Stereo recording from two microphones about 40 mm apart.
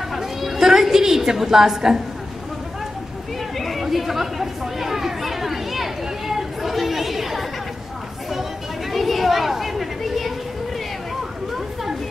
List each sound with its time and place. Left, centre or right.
0.2 s a sound: centre
3.5 s chatter: centre
8.9 s chatter: centre